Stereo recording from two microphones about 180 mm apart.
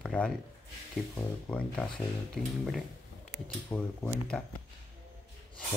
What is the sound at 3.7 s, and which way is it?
Speech, 20° left (ahead or behind).